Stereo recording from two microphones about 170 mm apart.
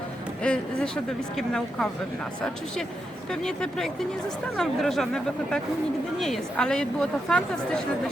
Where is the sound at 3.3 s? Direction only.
5° left (ahead or behind).